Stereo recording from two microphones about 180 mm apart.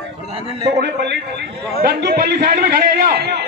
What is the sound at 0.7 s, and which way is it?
A man's voice, 70° right (ahead or behind).